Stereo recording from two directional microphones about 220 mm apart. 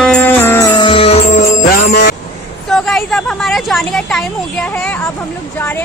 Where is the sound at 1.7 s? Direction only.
45° left (ahead or behind).